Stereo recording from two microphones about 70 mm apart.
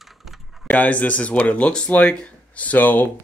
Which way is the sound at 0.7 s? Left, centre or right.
Centre.